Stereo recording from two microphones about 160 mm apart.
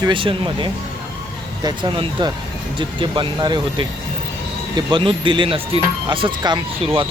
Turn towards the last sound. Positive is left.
turn(degrees=-35)  # may be behind; listen again after turning